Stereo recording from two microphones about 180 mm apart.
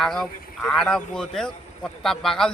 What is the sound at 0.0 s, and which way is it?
A man's voice, 5° left (ahead or behind).